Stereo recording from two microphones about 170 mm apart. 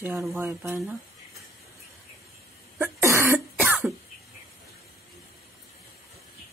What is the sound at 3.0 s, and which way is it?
Cough, 15° right (ahead or behind).